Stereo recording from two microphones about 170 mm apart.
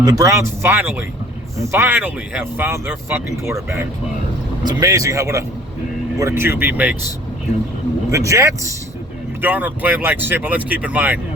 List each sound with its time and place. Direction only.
0.0 s speech: 20° right (ahead or behind)
8.1 s speech: 20° right (ahead or behind)